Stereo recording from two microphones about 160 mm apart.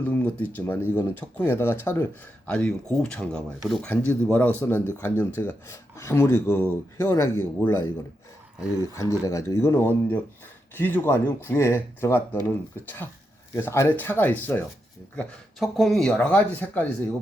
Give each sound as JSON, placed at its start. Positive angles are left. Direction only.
{"t": 0.0, "sound": "speech", "side_deg": 10}
{"t": 13.6, "sound": "speech", "side_deg": 15}